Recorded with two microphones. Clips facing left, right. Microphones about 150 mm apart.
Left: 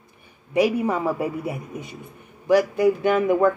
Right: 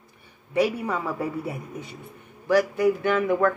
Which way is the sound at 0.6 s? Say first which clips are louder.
Left 4 dB; 15° left (ahead or behind).